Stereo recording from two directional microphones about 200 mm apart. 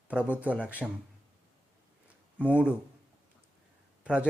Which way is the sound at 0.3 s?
5° right (ahead or behind).